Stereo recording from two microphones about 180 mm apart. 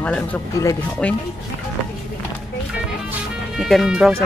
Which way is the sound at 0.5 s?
15° left (ahead or behind).